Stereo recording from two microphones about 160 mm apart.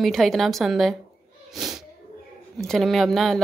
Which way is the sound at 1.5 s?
Centre (ahead or behind).